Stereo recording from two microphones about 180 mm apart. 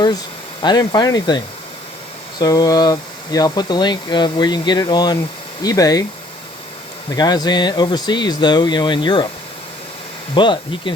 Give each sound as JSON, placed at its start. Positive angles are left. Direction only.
{"t": 0.6, "sound": "speech", "side_deg": 25}
{"t": 2.4, "sound": "speech", "side_deg": 20}
{"t": 7.2, "sound": "speech", "side_deg": 20}
{"t": 10.3, "sound": "speech", "side_deg": 25}